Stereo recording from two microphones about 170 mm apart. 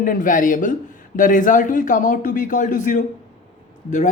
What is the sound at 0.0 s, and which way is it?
A woman's voice, 55° left (ahead or behind).